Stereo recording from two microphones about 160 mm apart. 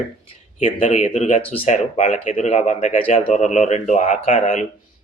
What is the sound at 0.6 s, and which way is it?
Speech, 50° left (ahead or behind).